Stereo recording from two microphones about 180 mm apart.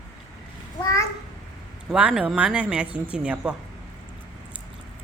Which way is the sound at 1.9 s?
5° right (ahead or behind).